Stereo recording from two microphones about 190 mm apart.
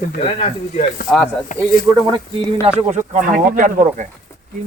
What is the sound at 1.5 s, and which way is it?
Speech, 40° left (ahead or behind).